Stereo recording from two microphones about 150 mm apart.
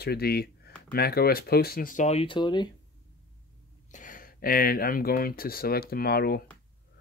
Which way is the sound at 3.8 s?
60° left (ahead or behind).